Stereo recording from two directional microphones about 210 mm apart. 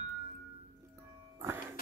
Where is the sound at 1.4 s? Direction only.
10° right (ahead or behind).